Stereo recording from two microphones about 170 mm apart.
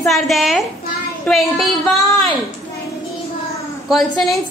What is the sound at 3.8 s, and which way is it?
Speech, centre (ahead or behind).